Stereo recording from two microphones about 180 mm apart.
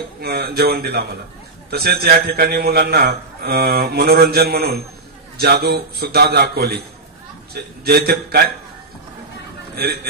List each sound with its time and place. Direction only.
0.2 s a man's voice: 60° right (ahead or behind)